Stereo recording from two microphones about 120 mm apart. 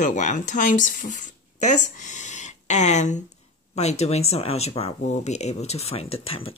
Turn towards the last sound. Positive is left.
turn(degrees=55)  # may be behind; listen again after turning